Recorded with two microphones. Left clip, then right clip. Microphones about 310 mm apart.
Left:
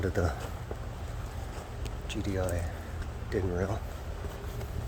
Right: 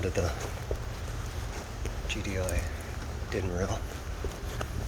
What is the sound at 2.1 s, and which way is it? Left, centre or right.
Speech, left.